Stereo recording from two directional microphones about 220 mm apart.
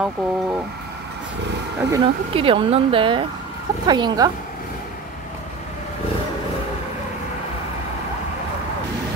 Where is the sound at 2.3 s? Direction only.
25° right (ahead or behind).